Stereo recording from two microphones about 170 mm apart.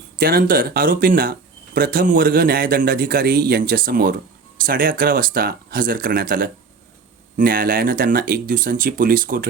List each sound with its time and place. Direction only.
0.2 s speech: 60° right (ahead or behind)